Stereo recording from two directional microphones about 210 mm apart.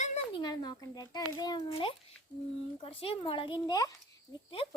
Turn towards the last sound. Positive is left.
turn(degrees=15)  # may be behind; listen again after turning